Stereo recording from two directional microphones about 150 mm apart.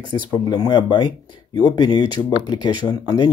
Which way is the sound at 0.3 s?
30° left (ahead or behind).